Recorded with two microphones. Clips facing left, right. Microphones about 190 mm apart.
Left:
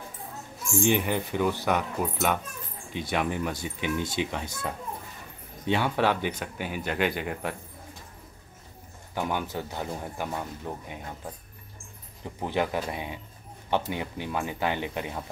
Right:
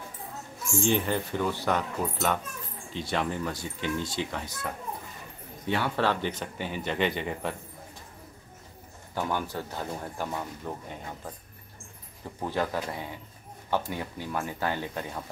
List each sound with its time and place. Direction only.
0.8 s speech: 15° left (ahead or behind)
9.1 s speech: 15° left (ahead or behind)
12.4 s speech: 15° left (ahead or behind)